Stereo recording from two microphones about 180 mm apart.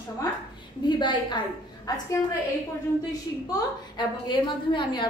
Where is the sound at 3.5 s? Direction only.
25° left (ahead or behind).